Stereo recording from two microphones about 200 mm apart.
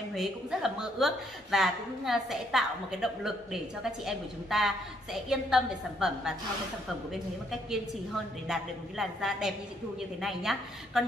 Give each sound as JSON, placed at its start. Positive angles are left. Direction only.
{"t": 0.1, "sound": "a woman's voice", "side_deg": 0}
{"t": 8.5, "sound": "a woman's voice", "side_deg": 0}